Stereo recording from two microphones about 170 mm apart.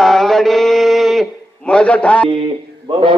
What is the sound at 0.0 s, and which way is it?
Mantra, centre (ahead or behind).